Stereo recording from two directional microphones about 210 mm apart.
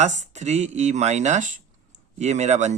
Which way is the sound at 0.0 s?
35° right (ahead or behind).